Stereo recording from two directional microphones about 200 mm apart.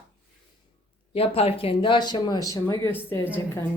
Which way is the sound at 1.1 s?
30° left (ahead or behind).